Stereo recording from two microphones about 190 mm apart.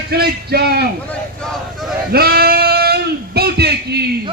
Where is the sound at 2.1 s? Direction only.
55° right (ahead or behind).